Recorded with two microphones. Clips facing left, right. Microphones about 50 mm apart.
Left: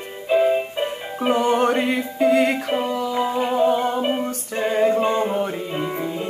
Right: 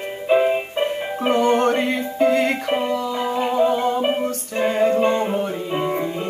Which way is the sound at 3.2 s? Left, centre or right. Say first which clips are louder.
Even; centre.